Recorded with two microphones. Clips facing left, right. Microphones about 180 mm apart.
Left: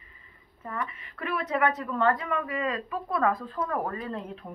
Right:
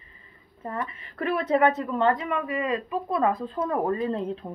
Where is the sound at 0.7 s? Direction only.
30° right (ahead or behind).